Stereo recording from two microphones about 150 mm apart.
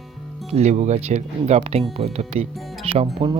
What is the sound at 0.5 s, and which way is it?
Speech, 50° right (ahead or behind).